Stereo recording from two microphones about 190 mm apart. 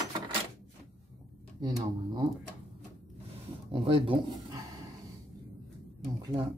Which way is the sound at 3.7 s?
25° right (ahead or behind).